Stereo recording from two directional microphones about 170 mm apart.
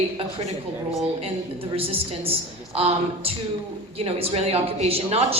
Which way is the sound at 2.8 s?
35° right (ahead or behind).